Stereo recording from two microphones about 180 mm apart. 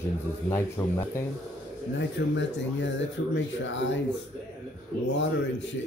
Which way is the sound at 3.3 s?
90° left.